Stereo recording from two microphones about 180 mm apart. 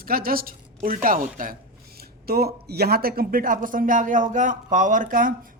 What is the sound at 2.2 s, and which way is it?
Speech, 60° right (ahead or behind).